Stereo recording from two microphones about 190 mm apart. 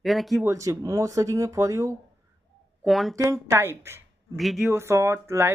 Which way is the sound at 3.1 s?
15° right (ahead or behind).